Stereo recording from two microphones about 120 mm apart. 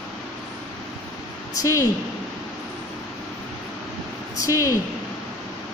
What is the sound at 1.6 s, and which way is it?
Speech, 30° left (ahead or behind).